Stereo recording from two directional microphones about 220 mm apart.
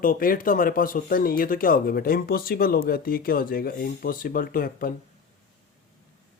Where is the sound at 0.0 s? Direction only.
40° left (ahead or behind).